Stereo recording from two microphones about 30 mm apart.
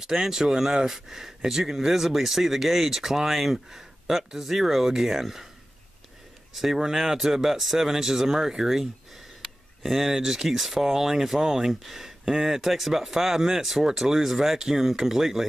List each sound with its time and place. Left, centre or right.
0.0 s speech: centre
6.5 s speech: centre
12.6 s speech: centre